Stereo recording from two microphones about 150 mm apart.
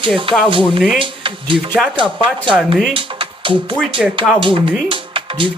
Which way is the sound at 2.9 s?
35° right (ahead or behind).